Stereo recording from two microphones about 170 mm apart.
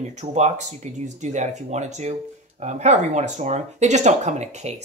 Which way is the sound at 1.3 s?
45° right (ahead or behind).